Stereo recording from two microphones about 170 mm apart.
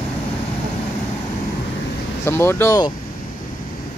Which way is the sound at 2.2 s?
15° left (ahead or behind).